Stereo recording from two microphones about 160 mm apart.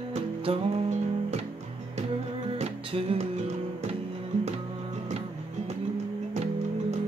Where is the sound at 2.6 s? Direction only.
35° right (ahead or behind).